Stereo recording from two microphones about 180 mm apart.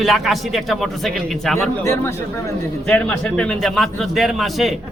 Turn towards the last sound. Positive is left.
turn(degrees=0)  # may be behind; listen again after turning